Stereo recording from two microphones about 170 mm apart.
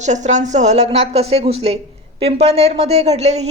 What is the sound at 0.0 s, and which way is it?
A woman's voice, 45° right (ahead or behind).